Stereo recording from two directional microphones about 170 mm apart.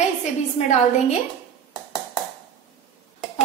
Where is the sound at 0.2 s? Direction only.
40° left (ahead or behind).